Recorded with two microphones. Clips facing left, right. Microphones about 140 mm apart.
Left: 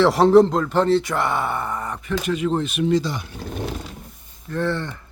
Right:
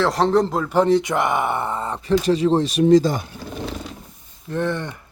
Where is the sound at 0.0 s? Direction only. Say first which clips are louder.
Left 4 dB; 5° left (ahead or behind); by 3.2 s 45° right (ahead or behind).